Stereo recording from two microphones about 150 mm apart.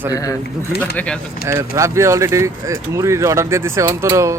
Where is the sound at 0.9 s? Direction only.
5° left (ahead or behind).